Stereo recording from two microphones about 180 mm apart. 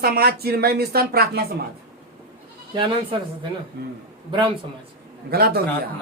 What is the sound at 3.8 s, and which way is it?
Speech, 60° right (ahead or behind).